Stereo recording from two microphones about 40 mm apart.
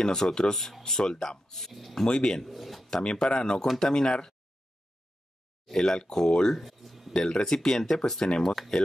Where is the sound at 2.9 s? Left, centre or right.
Centre.